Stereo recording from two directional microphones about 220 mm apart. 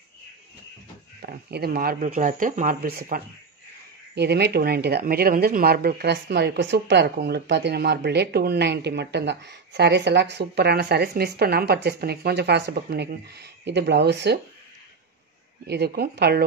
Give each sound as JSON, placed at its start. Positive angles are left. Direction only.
{"t": 1.2, "sound": "speech", "side_deg": -45}
{"t": 15.6, "sound": "speech", "side_deg": -50}